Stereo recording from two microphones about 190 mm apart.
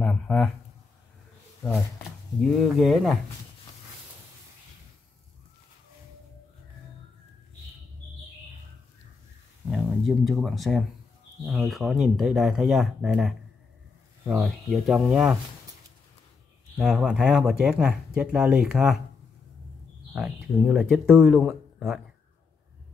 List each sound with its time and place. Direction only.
0.0 s a sound: 5° left (ahead or behind)
2.4 s speech: centre (ahead or behind)
9.7 s speech: centre (ahead or behind)
14.4 s speech: centre (ahead or behind)
16.7 s speech: 5° right (ahead or behind)
20.1 s speech: 5° right (ahead or behind)